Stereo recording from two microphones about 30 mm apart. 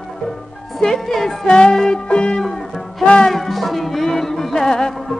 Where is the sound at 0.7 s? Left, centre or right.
Centre.